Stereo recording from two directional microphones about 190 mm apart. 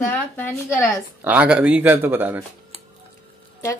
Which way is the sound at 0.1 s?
10° left (ahead or behind).